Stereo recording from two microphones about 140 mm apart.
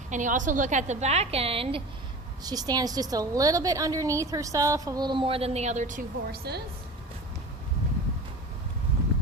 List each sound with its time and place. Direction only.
0.1 s a woman's voice: 65° right (ahead or behind); by 1.8 s 40° right (ahead or behind)
2.4 s a woman's voice: 25° right (ahead or behind); by 6.5 s 90° right